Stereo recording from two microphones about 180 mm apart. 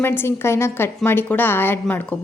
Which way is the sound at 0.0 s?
10° left (ahead or behind).